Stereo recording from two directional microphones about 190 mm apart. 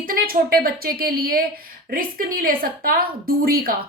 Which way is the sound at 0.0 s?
50° right (ahead or behind).